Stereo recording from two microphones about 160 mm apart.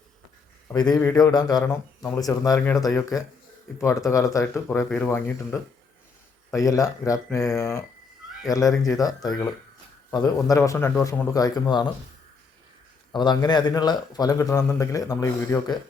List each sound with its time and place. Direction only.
0.7 s speech: 20° left (ahead or behind)
1.6 s speech: 15° left (ahead or behind)
13.1 s speech: 25° left (ahead or behind)